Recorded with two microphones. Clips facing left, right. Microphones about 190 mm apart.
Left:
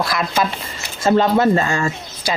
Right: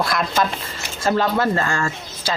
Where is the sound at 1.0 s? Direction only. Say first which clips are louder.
Left 5 dB; 20° left (ahead or behind).